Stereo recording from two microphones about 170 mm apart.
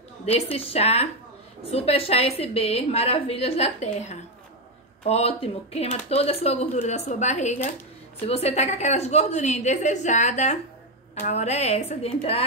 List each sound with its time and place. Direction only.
0.2 s speech: 35° left (ahead or behind)